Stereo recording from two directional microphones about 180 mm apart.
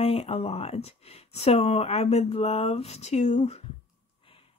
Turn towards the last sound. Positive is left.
turn(degrees=40)  # may be behind; listen again after turning